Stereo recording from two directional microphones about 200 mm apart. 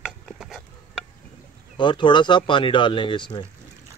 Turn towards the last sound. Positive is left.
turn(degrees=25)  # may be behind; listen again after turning